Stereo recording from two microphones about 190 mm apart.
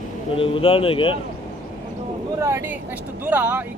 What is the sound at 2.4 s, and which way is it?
Speech, 15° right (ahead or behind).